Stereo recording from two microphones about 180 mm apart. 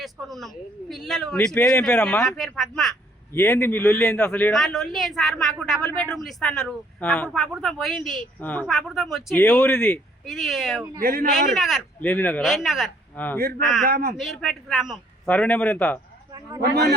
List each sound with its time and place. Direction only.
0.0 s a man's voice: centre (ahead or behind)
11.0 s a man's voice: 55° right (ahead or behind)
11.5 s a man's voice: centre (ahead or behind)
11.9 s speech: 10° left (ahead or behind)
12.4 s a man's voice: centre (ahead or behind)
13.1 s speech: 10° left (ahead or behind)
13.8 s a man's voice: 55° right (ahead or behind)
14.2 s a man's voice: centre (ahead or behind)